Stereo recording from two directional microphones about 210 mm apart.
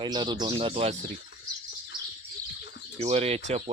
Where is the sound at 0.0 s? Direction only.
20° right (ahead or behind).